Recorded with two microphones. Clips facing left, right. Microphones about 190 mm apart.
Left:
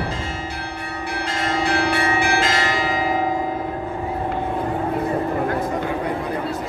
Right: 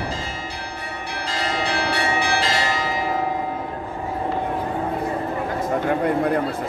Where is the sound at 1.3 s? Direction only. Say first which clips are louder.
Left 3 dB; 55° left (ahead or behind).